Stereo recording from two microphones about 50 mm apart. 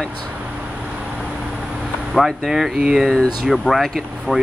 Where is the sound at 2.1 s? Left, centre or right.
Centre.